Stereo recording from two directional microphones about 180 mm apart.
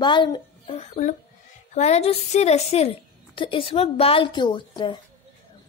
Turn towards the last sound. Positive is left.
turn(degrees=25)  # may be behind; listen again after turning